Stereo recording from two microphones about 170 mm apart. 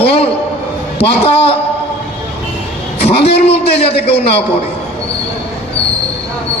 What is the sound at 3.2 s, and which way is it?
A man's voice, 35° left (ahead or behind).